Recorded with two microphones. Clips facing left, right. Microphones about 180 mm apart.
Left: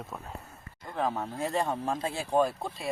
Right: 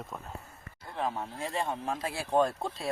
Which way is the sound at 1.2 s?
40° left (ahead or behind).